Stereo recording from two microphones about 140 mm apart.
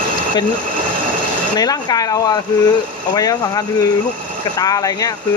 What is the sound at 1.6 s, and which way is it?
Speech, 25° left (ahead or behind).